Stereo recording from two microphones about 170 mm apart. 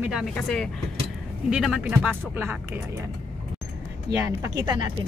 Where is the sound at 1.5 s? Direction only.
5° right (ahead or behind).